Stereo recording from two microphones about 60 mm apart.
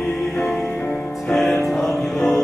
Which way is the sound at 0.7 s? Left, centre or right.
Left.